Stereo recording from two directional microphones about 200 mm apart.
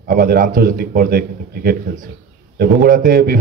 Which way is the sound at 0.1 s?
45° right (ahead or behind).